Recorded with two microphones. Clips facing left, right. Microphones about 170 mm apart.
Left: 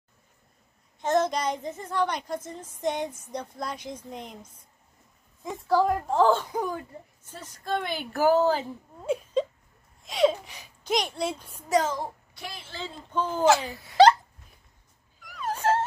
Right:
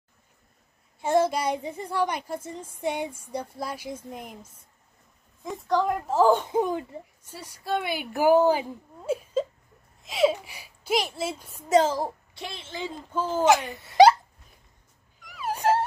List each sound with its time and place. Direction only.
1.0 s a child's voice: 10° right (ahead or behind)
6.3 s a child's voice: 20° right (ahead or behind)
9.0 s whimper: 5° right (ahead or behind)
10.0 s a child's voice: 5° right (ahead or behind)
11.7 s a child's voice: 30° right (ahead or behind); by 13.3 s 10° right (ahead or behind)
13.6 s a woman's voice: centre (ahead or behind)
15.2 s dog: 5° right (ahead or behind)